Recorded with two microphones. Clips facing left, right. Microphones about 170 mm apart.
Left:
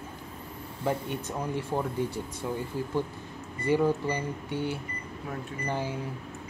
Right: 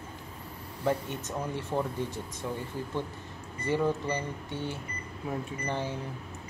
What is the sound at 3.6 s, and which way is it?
Speech, 15° left (ahead or behind).